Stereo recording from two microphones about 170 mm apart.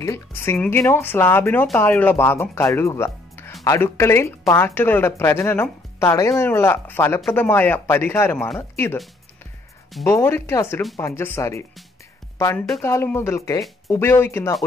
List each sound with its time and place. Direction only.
0.0 s speech: 15° left (ahead or behind)
7.2 s speech: 5° left (ahead or behind)
10.0 s speech: 15° left (ahead or behind)